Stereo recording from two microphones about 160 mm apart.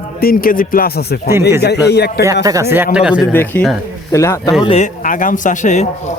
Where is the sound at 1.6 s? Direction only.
90° left.